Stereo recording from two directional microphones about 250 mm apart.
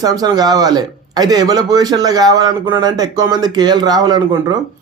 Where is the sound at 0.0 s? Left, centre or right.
Centre.